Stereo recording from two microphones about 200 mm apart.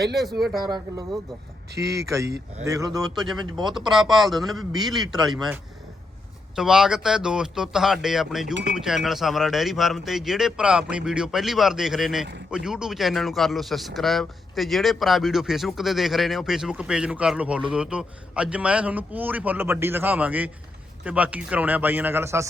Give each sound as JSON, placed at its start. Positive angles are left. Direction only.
{"t": 1.7, "sound": "a man's voice", "side_deg": -15}
{"t": 3.0, "sound": "speech", "side_deg": 0}
{"t": 6.6, "sound": "a man's voice", "side_deg": 0}